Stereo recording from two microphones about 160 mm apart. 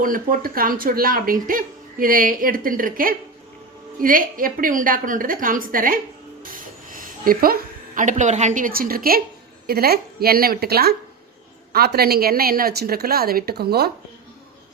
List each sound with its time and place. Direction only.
0.0 s a woman's voice: 60° right (ahead or behind); by 13.9 s 80° right